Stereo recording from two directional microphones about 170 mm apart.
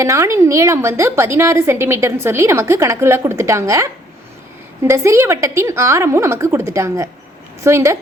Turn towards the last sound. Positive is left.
turn(degrees=-15)  # may be behind; listen again after turning